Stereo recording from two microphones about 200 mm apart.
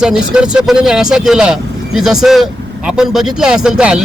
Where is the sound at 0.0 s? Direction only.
5° right (ahead or behind).